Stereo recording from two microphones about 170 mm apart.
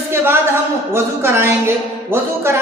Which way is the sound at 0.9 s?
15° right (ahead or behind).